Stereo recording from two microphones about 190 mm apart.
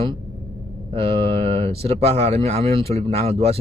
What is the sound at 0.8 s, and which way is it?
Speech, 30° right (ahead or behind).